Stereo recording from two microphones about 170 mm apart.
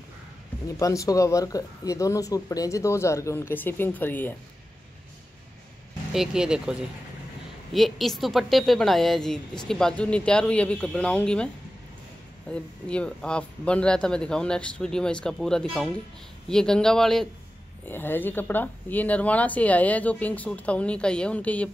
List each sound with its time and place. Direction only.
0.7 s speech: 20° left (ahead or behind)
6.1 s speech: 5° right (ahead or behind)